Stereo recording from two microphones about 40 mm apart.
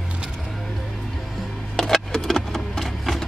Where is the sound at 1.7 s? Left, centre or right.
Centre.